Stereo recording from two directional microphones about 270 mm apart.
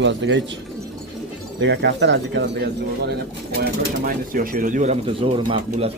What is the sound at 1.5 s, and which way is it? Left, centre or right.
Speech, right.